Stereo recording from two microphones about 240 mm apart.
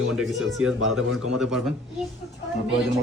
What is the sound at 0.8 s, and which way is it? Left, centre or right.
Speech, right.